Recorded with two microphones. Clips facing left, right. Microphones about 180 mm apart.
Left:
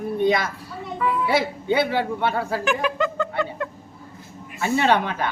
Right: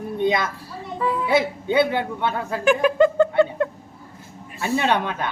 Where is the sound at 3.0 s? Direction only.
30° right (ahead or behind).